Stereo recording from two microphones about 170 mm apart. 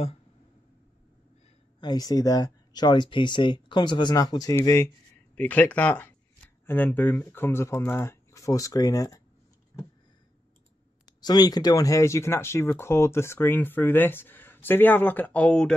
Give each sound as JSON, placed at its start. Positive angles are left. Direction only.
{"t": 1.8, "sound": "speech", "side_deg": 25}
{"t": 11.1, "sound": "speech", "side_deg": 25}